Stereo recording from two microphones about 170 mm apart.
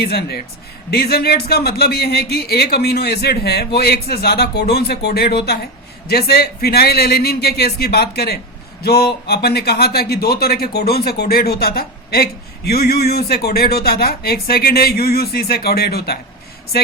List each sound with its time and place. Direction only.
0.0 s speech: 65° left (ahead or behind)